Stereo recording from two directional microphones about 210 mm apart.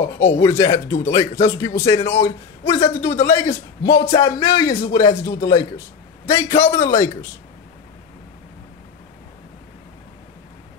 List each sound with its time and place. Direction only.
0.2 s a man's voice: 10° left (ahead or behind)